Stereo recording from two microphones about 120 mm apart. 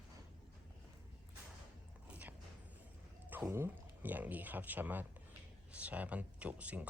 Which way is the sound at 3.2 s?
15° right (ahead or behind).